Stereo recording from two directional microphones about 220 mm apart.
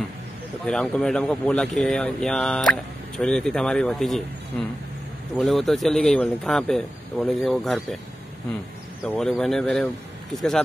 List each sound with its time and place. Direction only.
0.7 s speech: 5° left (ahead or behind)
9.0 s speech: 5° left (ahead or behind)